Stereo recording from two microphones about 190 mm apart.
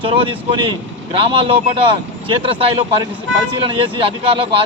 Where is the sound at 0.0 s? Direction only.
30° right (ahead or behind).